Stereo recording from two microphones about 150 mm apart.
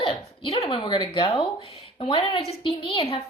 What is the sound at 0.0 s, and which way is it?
Speech, 40° left (ahead or behind).